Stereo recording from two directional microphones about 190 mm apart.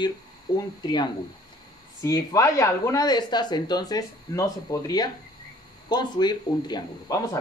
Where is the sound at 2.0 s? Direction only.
15° left (ahead or behind).